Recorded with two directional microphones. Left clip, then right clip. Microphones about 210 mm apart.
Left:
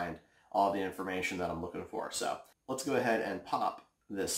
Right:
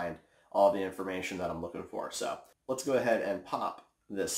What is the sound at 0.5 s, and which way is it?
Speech, 10° left (ahead or behind).